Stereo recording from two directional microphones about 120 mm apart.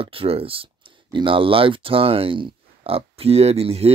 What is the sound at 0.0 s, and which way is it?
Speech, 50° right (ahead or behind).